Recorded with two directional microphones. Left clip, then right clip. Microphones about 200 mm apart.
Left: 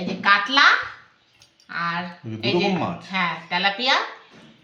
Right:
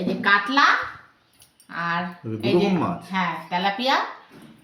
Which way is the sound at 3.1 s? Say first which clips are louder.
Left 2 dB; 45° left (ahead or behind).